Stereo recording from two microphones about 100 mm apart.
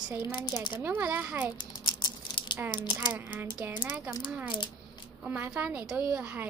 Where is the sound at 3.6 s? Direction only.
25° right (ahead or behind).